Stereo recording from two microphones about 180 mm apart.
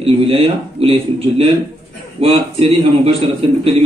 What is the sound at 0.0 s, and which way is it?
Speech, 30° right (ahead or behind).